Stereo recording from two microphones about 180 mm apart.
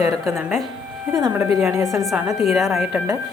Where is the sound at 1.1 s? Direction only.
15° right (ahead or behind).